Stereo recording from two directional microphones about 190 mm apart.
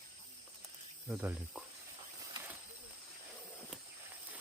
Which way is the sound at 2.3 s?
10° right (ahead or behind).